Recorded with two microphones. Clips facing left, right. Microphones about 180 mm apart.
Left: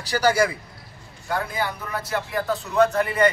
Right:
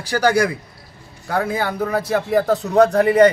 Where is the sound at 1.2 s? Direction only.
75° right (ahead or behind).